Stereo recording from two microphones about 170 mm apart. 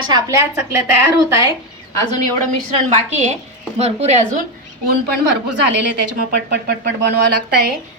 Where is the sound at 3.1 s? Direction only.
40° right (ahead or behind).